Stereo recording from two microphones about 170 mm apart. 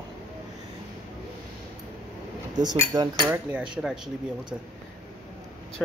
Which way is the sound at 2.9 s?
25° right (ahead or behind).